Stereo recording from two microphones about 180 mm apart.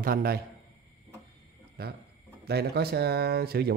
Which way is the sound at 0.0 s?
55° right (ahead or behind).